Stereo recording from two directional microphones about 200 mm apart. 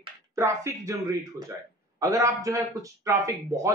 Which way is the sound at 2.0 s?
15° right (ahead or behind).